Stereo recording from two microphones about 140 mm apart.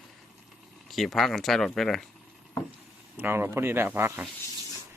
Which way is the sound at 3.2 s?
15° right (ahead or behind).